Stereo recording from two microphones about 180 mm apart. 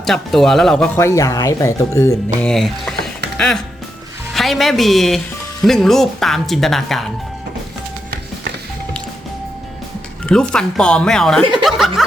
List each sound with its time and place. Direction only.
0.0 s speech: centre (ahead or behind)
0.9 s speech: 15° left (ahead or behind)
2.4 s speech: centre (ahead or behind)
10.2 s speech: 5° left (ahead or behind)